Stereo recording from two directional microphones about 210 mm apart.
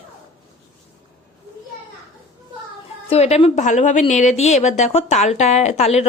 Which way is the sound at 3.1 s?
30° left (ahead or behind).